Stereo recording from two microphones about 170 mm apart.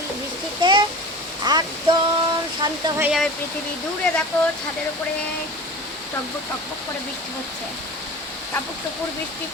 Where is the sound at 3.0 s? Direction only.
5° right (ahead or behind).